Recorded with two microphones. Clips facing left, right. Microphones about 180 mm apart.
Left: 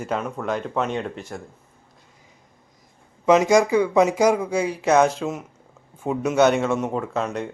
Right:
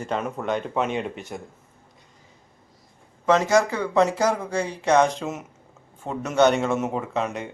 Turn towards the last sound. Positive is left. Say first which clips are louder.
# left 1 dB
turn(degrees=-5)  # may be behind; listen again after turning